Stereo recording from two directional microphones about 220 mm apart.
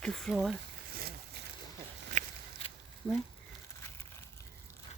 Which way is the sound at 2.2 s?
35° right (ahead or behind).